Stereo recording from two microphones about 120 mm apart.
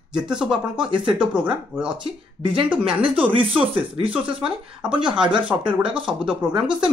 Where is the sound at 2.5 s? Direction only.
45° right (ahead or behind).